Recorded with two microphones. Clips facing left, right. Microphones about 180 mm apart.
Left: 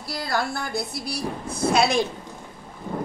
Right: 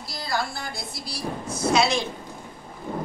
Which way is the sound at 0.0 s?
60° left (ahead or behind).